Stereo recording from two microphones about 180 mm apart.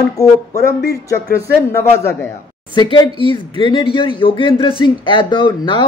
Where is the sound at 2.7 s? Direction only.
25° left (ahead or behind).